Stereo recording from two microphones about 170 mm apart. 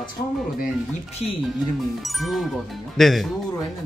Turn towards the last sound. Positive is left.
turn(degrees=0)  # may be behind; listen again after turning